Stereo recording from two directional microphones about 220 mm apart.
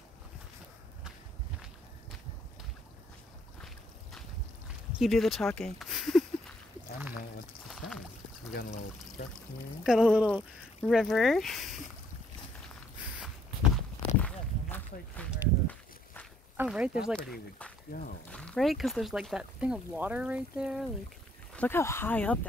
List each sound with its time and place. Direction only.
4.9 s speech: centre (ahead or behind)
7.6 s a sound: centre (ahead or behind)
8.5 s speech: 45° left (ahead or behind)
9.8 s speech: centre (ahead or behind)
14.2 s walk: 5° left (ahead or behind)
16.5 s speech: 5° right (ahead or behind)
21.5 s speech: 10° left (ahead or behind)